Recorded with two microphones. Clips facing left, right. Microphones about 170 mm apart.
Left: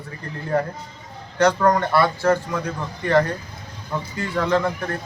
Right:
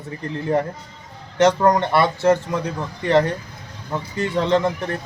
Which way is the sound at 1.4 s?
20° right (ahead or behind).